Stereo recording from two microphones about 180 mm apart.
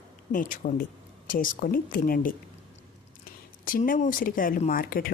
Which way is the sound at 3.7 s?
50° left (ahead or behind).